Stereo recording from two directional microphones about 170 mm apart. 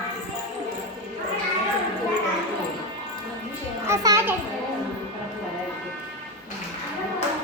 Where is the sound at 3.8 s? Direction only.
15° right (ahead or behind).